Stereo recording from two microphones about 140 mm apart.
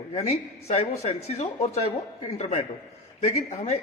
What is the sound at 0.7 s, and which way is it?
A man's voice, 45° left (ahead or behind).